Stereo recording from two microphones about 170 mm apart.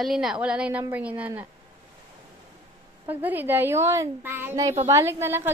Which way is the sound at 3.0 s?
10° right (ahead or behind).